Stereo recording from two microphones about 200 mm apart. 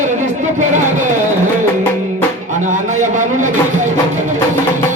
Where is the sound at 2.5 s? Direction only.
40° right (ahead or behind).